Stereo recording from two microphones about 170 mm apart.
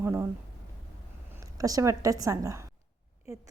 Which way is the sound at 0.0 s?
15° right (ahead or behind).